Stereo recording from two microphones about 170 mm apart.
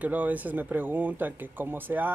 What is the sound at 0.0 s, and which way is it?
Speech, 10° right (ahead or behind).